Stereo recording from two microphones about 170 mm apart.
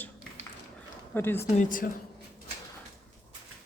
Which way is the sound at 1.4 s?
50° left (ahead or behind).